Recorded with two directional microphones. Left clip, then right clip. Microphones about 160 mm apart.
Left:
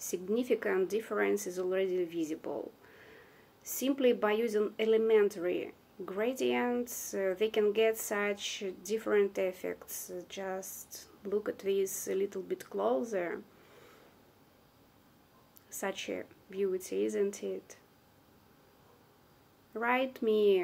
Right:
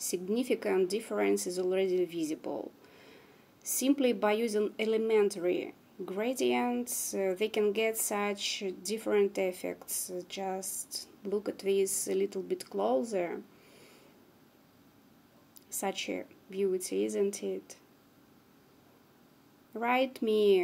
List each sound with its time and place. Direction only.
0.1 s speech: 30° right (ahead or behind)
3.6 s speech: 30° right (ahead or behind)
15.8 s speech: 35° right (ahead or behind)
19.8 s speech: 35° right (ahead or behind)